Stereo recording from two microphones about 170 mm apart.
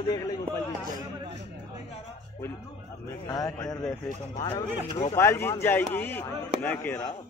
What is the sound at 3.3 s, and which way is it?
Speech, 20° left (ahead or behind).